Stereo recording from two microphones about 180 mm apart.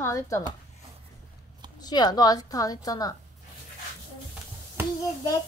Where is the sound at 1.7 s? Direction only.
25° left (ahead or behind).